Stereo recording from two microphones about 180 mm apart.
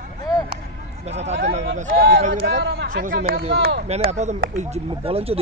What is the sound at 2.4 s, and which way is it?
Speech, 65° right (ahead or behind).